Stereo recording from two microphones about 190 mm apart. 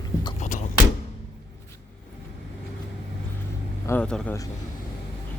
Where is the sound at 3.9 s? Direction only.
5° left (ahead or behind).